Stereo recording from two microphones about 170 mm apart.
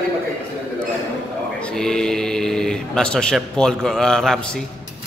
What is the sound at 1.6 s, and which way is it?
Speech, 5° left (ahead or behind).